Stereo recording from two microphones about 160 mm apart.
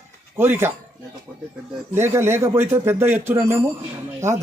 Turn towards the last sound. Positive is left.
turn(degrees=-20)  # may be behind; listen again after turning